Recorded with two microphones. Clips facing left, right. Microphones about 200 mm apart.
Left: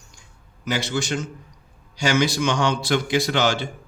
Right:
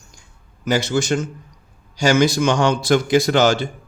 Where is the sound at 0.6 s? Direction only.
45° right (ahead or behind).